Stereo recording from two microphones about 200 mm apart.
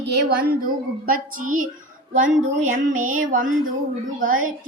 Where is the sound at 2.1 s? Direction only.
40° right (ahead or behind).